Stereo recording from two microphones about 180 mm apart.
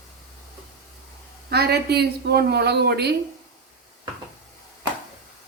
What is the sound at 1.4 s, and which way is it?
Speech, 60° right (ahead or behind).